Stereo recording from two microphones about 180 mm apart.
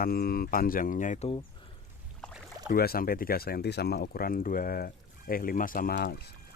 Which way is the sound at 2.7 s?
55° left (ahead or behind).